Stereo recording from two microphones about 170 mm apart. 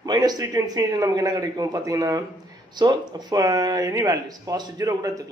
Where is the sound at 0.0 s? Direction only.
25° right (ahead or behind).